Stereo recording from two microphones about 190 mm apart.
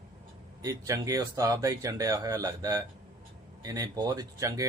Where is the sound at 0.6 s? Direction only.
15° right (ahead or behind).